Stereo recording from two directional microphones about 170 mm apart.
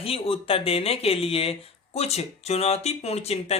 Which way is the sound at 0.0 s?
35° left (ahead or behind).